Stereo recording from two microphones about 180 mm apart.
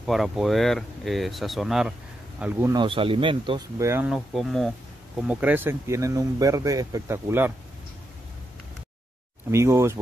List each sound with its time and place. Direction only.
0.0 s speech: centre (ahead or behind)
2.7 s speech: 30° right (ahead or behind)
3.7 s speech: 15° right (ahead or behind)
4.1 s speech: centre (ahead or behind)
9.5 s speech: 15° right (ahead or behind)